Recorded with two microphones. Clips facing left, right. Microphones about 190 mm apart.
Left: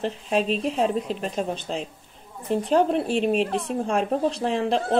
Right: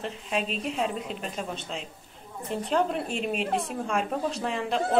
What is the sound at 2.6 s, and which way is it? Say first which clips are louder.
Speech: left 5 dB; 35° left (ahead or behind).